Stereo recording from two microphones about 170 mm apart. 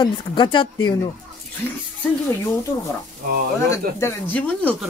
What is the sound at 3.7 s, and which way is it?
Speech, 15° left (ahead or behind).